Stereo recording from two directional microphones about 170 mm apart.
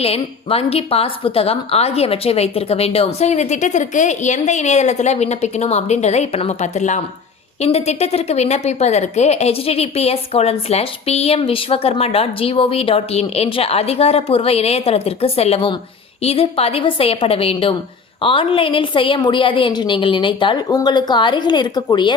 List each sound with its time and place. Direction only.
0.0 s a woman's voice: 35° left (ahead or behind)